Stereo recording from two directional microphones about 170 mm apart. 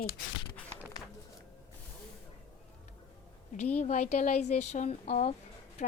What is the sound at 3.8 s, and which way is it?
A woman's voice, 40° left (ahead or behind).